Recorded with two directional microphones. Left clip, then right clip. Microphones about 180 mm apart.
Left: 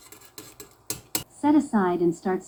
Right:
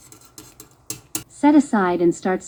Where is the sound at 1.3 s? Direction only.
50° right (ahead or behind).